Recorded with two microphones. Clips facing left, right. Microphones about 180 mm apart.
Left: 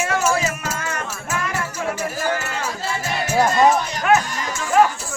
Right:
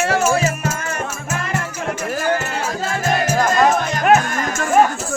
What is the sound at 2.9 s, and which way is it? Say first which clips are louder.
Music: right 4 dB; 45° right (ahead or behind).